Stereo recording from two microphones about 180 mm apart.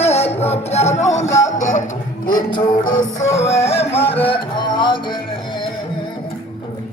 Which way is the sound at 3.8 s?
10° left (ahead or behind).